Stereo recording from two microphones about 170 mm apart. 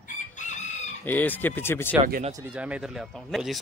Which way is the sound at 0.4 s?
45° left (ahead or behind).